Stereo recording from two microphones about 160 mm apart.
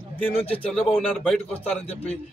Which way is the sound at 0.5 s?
10° left (ahead or behind).